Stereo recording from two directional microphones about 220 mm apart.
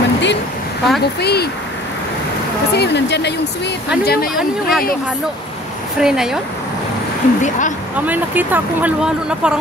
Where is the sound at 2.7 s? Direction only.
50° left (ahead or behind).